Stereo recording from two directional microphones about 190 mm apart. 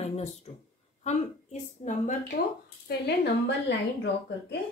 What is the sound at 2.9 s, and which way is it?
Speech, 55° left (ahead or behind).